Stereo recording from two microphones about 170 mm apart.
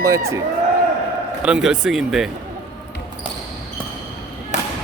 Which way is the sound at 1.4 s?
5° right (ahead or behind).